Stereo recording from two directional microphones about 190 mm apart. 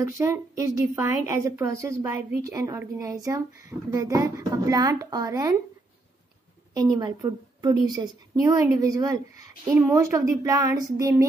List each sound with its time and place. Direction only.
0.0 s a woman's voice: 15° right (ahead or behind)
6.7 s a woman's voice: 20° right (ahead or behind)